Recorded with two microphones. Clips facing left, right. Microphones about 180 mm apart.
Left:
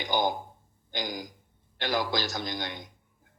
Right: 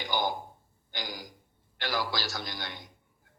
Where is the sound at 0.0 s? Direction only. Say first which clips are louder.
Left 3 dB; 20° left (ahead or behind).